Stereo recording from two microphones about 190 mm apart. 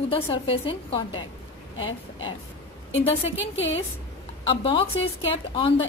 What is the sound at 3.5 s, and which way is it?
Speech, 75° left (ahead or behind).